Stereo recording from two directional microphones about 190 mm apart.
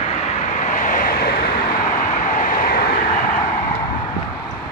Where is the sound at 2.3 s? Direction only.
45° left (ahead or behind).